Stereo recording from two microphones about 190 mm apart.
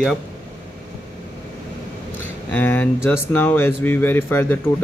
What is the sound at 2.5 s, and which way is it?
Speech, 10° left (ahead or behind).